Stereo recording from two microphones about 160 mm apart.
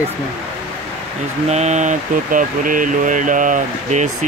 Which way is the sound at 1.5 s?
45° right (ahead or behind).